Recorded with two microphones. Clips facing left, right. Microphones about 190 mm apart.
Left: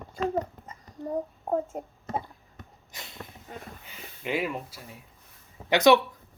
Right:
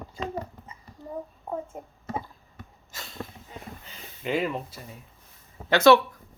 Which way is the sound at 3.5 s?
50° left (ahead or behind).